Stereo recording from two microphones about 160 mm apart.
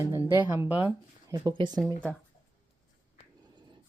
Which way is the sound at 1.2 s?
25° right (ahead or behind).